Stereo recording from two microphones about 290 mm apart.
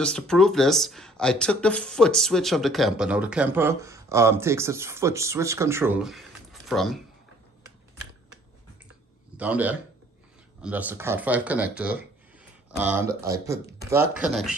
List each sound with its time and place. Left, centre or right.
0.0 s speech: centre
9.4 s speech: centre